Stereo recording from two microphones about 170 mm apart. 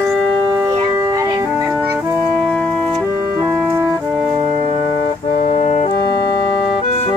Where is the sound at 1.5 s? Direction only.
5° right (ahead or behind).